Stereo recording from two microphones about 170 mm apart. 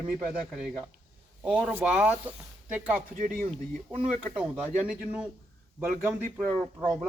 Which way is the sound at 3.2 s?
50° right (ahead or behind).